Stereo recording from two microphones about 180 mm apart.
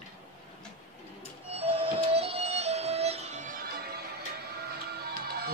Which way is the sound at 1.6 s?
30° right (ahead or behind).